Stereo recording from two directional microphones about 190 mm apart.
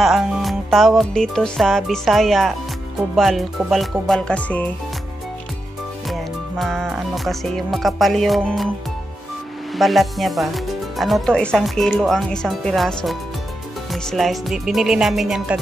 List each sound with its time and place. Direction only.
0.0 s music: centre (ahead or behind)
3.2 s speech: centre (ahead or behind)
6.6 s speech: centre (ahead or behind)
9.8 s speech: centre (ahead or behind)